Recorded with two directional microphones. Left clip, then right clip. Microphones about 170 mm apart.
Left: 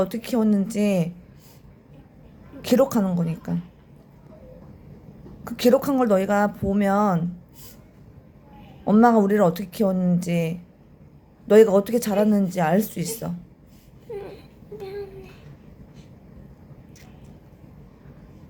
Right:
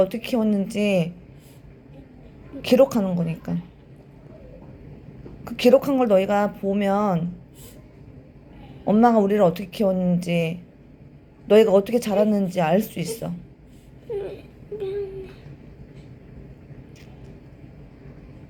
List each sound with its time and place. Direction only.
0.0 s speech: 15° left (ahead or behind)
2.6 s speech: 15° left (ahead or behind)
5.5 s speech: 15° left (ahead or behind)
8.8 s a woman's voice: 15° left (ahead or behind)
14.1 s a sound: 15° left (ahead or behind)